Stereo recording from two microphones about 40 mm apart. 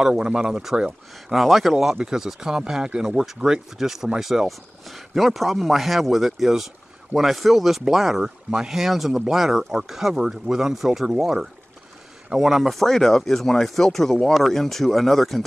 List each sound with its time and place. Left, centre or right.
0.0 s speech: centre
3.7 s speech: centre